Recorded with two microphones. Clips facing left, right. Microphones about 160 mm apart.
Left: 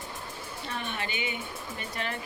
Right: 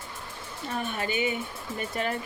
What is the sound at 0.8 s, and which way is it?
Speech, 40° right (ahead or behind).